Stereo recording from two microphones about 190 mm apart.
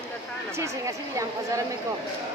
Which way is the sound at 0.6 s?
15° right (ahead or behind).